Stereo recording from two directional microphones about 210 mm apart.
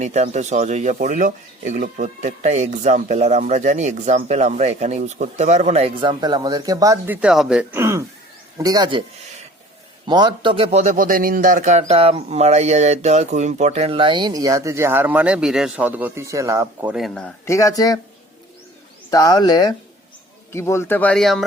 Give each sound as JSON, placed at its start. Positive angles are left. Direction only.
{"t": 0.0, "sound": "speech", "side_deg": -35}
{"t": 10.1, "sound": "speech", "side_deg": -20}
{"t": 16.9, "sound": "speech", "side_deg": 0}
{"t": 17.5, "sound": "speech", "side_deg": 15}
{"t": 19.1, "sound": "speech", "side_deg": 20}